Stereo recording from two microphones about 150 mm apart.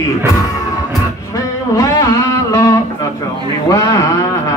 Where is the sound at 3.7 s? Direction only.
20° left (ahead or behind).